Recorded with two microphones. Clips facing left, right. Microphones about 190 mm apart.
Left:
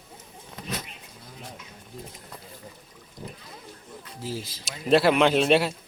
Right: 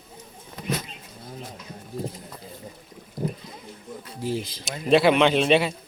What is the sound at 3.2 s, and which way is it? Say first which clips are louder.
Boat: right 11 dB; 45° right (ahead or behind).